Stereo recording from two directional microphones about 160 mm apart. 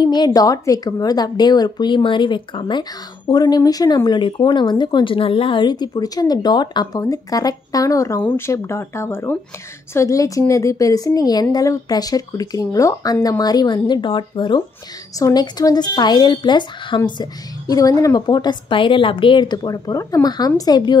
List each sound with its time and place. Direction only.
0.0 s a woman's voice: 25° left (ahead or behind)